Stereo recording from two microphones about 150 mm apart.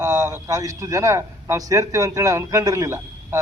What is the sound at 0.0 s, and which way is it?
A man's voice, 25° right (ahead or behind).